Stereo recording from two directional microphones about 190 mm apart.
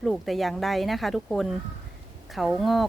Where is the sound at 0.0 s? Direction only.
Centre (ahead or behind).